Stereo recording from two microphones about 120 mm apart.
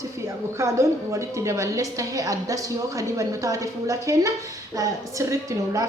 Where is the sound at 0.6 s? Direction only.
25° right (ahead or behind).